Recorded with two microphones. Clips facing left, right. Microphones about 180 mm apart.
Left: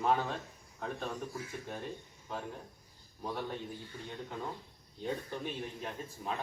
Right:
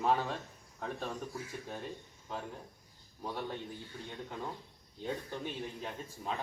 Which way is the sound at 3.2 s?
Centre (ahead or behind).